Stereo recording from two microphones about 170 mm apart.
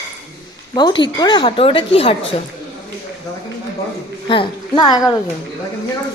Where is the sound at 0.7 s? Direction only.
25° left (ahead or behind).